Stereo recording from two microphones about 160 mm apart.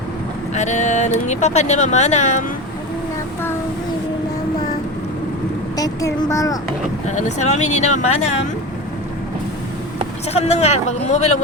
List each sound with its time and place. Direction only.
0.5 s speech: 45° left (ahead or behind)
5.7 s a child's voice: 20° left (ahead or behind)
7.1 s speech: 45° left (ahead or behind)
10.3 s speech: 40° left (ahead or behind)